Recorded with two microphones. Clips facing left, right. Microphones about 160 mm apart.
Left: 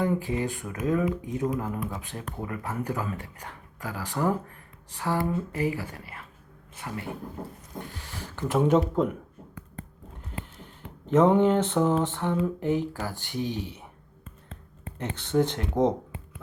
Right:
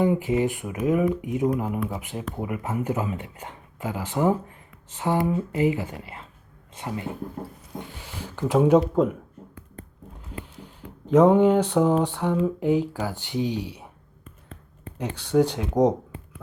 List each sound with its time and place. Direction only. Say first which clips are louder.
0.0 s speech: right 5 dB; 20° right (ahead or behind)
11.1 s speech: right 4 dB; 10° right (ahead or behind)
14.9 s speech: right 4 dB; 10° right (ahead or behind)